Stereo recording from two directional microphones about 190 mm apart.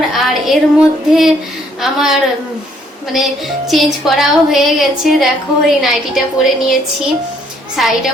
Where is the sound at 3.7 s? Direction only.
Centre (ahead or behind).